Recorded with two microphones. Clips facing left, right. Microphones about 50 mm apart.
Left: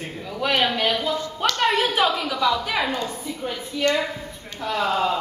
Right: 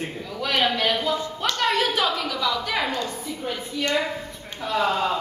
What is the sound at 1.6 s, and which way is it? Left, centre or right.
A woman's voice, centre.